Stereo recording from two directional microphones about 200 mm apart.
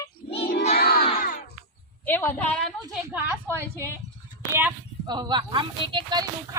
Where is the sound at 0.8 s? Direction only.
50° left (ahead or behind).